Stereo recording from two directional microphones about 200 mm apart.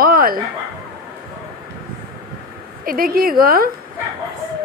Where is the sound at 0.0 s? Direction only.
45° right (ahead or behind).